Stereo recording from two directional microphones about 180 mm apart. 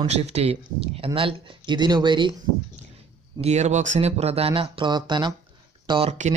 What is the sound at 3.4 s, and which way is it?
Speech, 40° right (ahead or behind).